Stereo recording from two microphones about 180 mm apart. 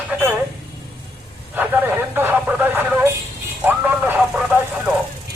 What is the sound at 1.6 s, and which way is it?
Radio, 10° right (ahead or behind).